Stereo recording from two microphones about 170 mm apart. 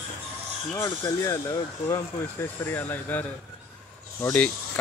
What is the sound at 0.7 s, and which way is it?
Speech, 20° left (ahead or behind).